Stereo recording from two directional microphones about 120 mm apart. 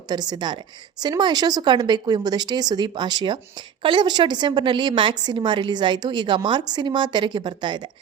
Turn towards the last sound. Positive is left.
turn(degrees=-40)  # may be behind; listen again after turning